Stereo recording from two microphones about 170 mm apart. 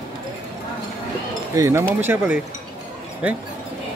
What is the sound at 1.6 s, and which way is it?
Speech, 15° right (ahead or behind).